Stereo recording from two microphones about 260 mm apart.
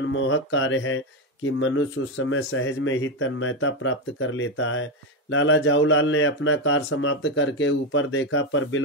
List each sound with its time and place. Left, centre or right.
0.0 s speech: left